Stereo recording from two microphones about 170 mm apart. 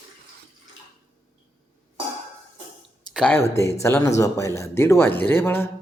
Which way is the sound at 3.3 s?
15° left (ahead or behind).